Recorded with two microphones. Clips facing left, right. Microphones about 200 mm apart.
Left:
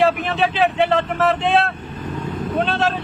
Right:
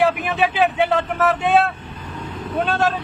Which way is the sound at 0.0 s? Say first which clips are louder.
Left 1 dB; 5° right (ahead or behind).